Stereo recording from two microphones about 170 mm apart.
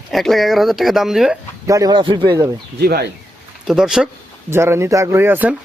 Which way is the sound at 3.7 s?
5° right (ahead or behind).